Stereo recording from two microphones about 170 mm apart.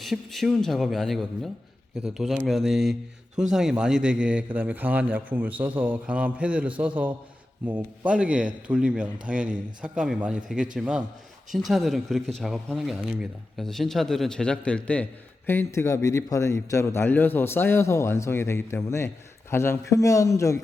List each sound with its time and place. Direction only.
0.0 s a man's voice: centre (ahead or behind); by 20.6 s 20° left (ahead or behind)